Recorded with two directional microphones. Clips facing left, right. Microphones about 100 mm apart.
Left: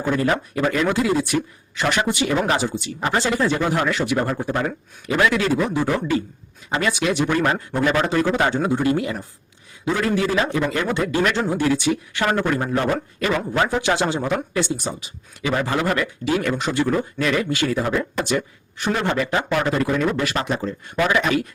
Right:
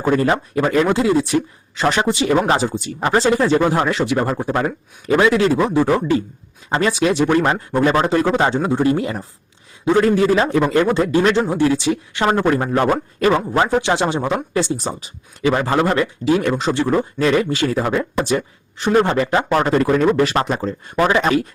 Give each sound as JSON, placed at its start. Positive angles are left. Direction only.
{"t": 0.0, "sound": "speech", "side_deg": -40}
{"t": 0.9, "sound": "speech", "side_deg": -25}
{"t": 12.7, "sound": "speech", "side_deg": -45}